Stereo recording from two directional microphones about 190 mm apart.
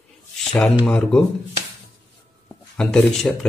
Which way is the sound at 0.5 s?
Centre (ahead or behind).